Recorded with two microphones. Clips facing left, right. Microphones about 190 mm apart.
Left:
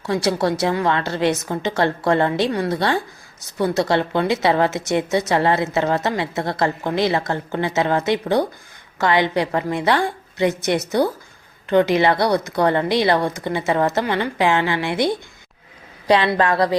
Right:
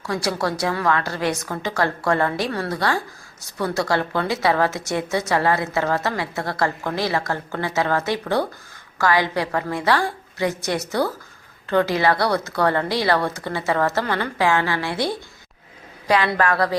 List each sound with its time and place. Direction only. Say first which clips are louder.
0.0 s speech: left 4 dB; 25° left (ahead or behind)